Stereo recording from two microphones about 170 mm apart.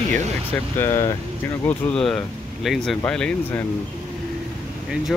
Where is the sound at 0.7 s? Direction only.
15° left (ahead or behind).